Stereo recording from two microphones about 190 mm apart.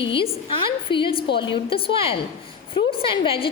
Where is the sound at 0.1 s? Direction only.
25° left (ahead or behind).